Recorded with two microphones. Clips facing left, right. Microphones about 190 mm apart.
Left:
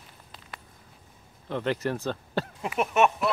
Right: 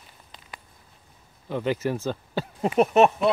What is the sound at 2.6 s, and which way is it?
Speech, 35° right (ahead or behind).